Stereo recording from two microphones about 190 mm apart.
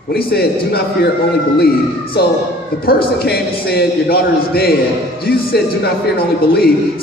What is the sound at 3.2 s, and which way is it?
A man's voice, 55° left (ahead or behind).